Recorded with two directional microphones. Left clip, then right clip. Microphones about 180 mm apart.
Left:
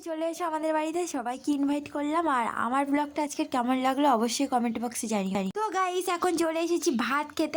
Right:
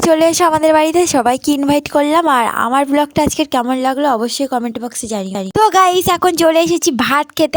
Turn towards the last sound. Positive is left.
turn(degrees=-50)  # may be behind; listen again after turning